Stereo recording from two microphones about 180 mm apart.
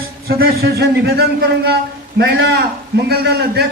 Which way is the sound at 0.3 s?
60° right (ahead or behind).